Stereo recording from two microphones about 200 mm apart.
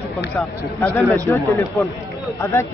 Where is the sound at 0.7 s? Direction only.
10° left (ahead or behind).